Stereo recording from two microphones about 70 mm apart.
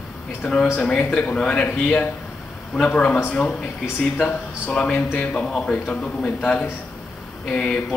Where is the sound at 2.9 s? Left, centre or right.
Centre.